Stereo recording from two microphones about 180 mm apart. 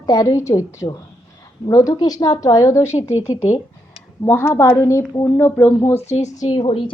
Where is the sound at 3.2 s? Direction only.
40° left (ahead or behind).